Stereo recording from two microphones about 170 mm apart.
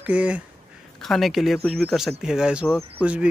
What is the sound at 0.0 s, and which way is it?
Speech, 10° right (ahead or behind).